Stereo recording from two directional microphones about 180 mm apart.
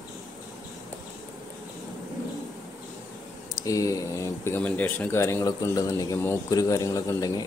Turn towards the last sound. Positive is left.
turn(degrees=20)  # may be behind; listen again after turning